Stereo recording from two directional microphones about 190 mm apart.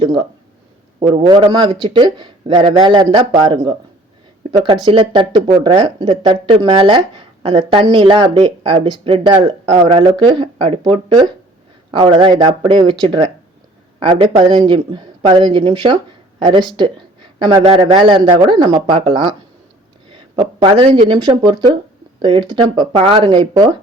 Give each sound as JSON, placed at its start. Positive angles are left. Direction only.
{"t": 0.0, "sound": "speech", "side_deg": -25}